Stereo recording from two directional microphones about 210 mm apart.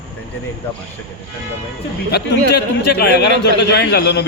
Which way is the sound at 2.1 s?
50° left (ahead or behind).